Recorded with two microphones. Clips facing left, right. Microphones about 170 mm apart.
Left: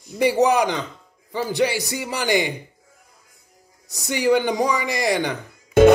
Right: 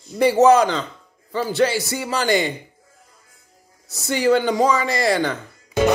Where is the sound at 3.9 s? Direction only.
15° left (ahead or behind).